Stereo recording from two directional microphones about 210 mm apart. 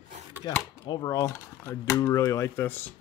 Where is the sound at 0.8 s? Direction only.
20° left (ahead or behind).